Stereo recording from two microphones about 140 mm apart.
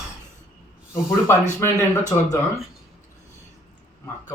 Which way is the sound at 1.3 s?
15° left (ahead or behind).